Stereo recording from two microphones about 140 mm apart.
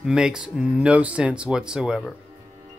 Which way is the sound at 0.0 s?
5° right (ahead or behind).